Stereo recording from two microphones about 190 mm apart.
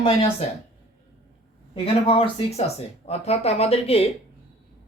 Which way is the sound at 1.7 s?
30° left (ahead or behind).